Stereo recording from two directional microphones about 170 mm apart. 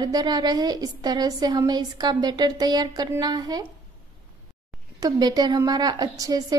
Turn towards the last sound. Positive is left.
turn(degrees=-20)  # may be behind; listen again after turning